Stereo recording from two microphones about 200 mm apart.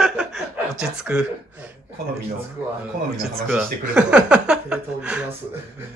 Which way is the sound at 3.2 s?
Centre (ahead or behind).